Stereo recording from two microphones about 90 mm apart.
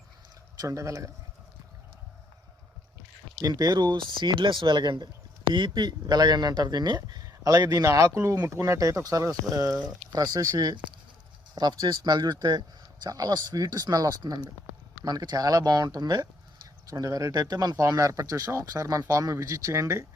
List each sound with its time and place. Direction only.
0.6 s speech: 35° right (ahead or behind)
3.4 s speech: 45° right (ahead or behind)
7.9 s speech: 35° right (ahead or behind)